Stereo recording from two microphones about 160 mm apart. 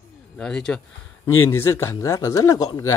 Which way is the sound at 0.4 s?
5° left (ahead or behind).